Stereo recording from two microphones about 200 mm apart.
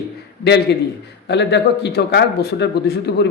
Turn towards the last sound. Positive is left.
turn(degrees=55)  # may be behind; listen again after turning